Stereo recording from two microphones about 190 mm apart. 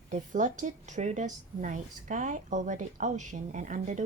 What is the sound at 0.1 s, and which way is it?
A woman's voice, 40° right (ahead or behind).